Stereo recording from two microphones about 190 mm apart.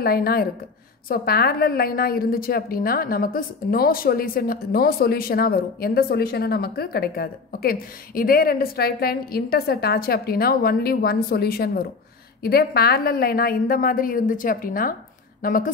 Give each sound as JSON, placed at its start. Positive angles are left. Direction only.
{"t": 0.0, "sound": "a woman's voice", "side_deg": 50}